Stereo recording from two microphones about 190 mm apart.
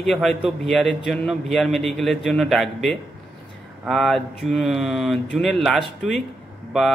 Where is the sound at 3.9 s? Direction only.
Centre (ahead or behind).